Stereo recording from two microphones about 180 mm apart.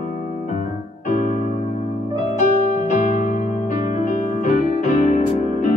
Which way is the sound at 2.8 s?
45° left (ahead or behind).